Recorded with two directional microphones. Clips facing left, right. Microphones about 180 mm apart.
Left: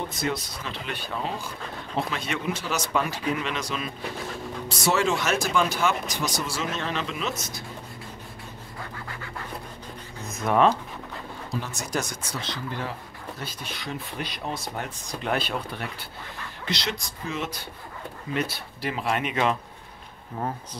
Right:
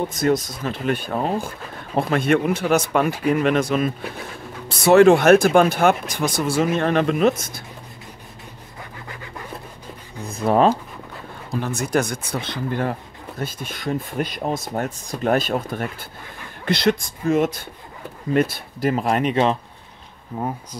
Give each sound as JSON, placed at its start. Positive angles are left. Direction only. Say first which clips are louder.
{"t": 0.1, "sound": "speech", "louder": "right 9 dB", "side_deg": -45}
{"t": 10.2, "sound": "speech", "louder": "right 4 dB", "side_deg": -35}
{"t": 11.6, "sound": "speech", "louder": "right 13 dB", "side_deg": -55}
{"t": 20.3, "sound": "speech", "louder": "right 4 dB", "side_deg": -20}